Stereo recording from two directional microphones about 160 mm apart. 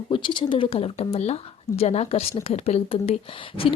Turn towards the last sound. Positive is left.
turn(degrees=35)  # may be behind; listen again after turning